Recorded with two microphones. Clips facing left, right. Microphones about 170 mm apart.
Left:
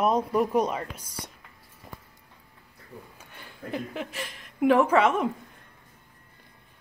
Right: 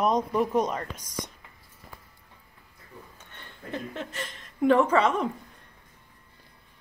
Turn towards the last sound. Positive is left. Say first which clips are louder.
# left 1 dB
turn(degrees=5)  # may be behind; listen again after turning